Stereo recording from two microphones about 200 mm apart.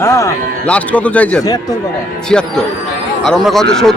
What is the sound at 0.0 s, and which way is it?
A man's voice, 15° left (ahead or behind).